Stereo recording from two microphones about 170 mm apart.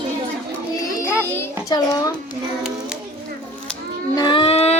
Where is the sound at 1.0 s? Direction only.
15° left (ahead or behind).